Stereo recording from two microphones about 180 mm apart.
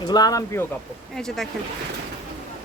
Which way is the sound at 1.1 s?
Centre (ahead or behind).